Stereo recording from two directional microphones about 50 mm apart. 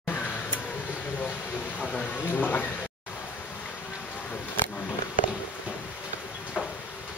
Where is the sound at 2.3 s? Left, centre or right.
Left.